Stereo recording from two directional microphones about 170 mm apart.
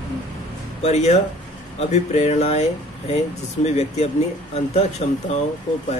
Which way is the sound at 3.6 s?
40° left (ahead or behind).